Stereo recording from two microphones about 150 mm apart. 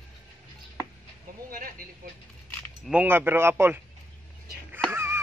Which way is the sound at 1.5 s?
70° right (ahead or behind).